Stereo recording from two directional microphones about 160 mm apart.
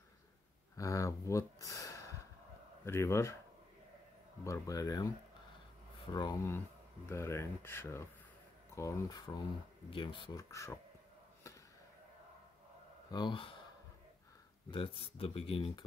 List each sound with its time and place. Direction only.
0.7 s speech: 20° left (ahead or behind)
4.5 s speech: 20° left (ahead or behind)
13.1 s speech: 30° left (ahead or behind)
14.7 s speech: 35° left (ahead or behind)